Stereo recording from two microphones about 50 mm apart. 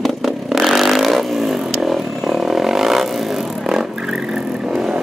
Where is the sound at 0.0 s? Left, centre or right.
Centre.